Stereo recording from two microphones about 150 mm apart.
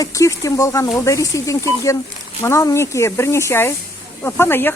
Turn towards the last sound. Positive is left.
turn(degrees=15)  # may be behind; listen again after turning